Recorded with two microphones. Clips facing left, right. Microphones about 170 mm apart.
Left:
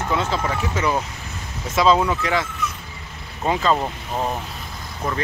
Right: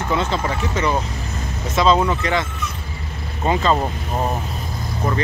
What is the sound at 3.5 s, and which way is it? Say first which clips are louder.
Speech: right 2 dB; centre (ahead or behind).